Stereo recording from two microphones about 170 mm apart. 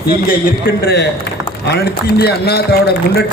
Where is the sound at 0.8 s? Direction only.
75° left (ahead or behind).